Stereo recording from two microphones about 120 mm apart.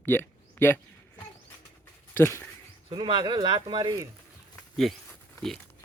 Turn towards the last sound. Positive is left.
turn(degrees=0)  # may be behind; listen again after turning